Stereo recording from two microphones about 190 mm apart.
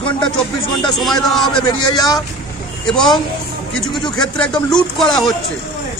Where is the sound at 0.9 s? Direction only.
Centre (ahead or behind).